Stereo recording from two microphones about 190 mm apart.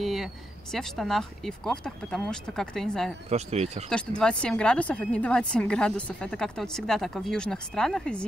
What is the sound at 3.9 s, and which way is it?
Speech, 5° left (ahead or behind).